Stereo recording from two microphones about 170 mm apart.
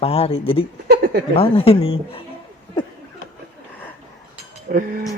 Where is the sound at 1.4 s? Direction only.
35° left (ahead or behind).